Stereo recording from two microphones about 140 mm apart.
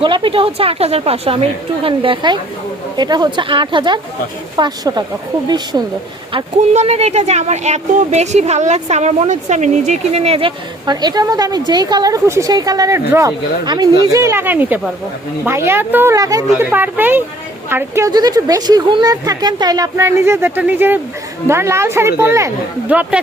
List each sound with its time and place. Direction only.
0.0 s a woman's voice: 40° right (ahead or behind)
6.7 s speech: 50° right (ahead or behind); by 16.1 s 15° right (ahead or behind)
16.1 s speech: 25° right (ahead or behind)
16.6 s speech: 15° right (ahead or behind)
18.1 s speech: 30° right (ahead or behind); by 23.2 s 10° right (ahead or behind)